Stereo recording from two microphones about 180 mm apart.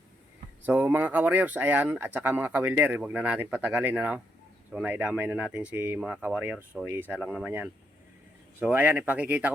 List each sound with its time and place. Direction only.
0.6 s speech: 10° right (ahead or behind)